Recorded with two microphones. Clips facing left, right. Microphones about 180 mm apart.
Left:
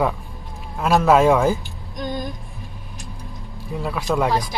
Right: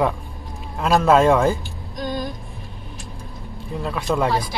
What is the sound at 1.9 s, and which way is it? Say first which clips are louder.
Vehicle: right 1 dB; 20° left (ahead or behind).